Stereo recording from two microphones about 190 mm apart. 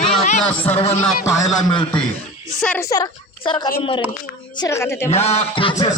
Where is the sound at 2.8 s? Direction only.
20° left (ahead or behind).